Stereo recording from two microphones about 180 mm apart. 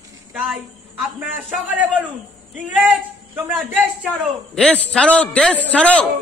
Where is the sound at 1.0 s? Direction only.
10° right (ahead or behind).